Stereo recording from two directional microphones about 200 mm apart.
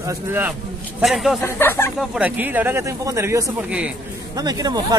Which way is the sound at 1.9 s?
5° right (ahead or behind).